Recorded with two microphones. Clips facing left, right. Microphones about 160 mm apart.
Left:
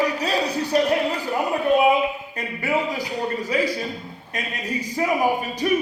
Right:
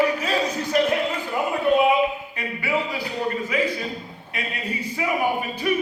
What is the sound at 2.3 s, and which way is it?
Speech, 45° left (ahead or behind).